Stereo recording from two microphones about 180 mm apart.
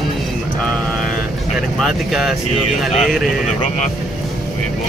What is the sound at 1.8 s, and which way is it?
Speech, centre (ahead or behind).